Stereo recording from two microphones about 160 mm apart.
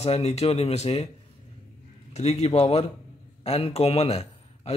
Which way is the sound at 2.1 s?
40° left (ahead or behind).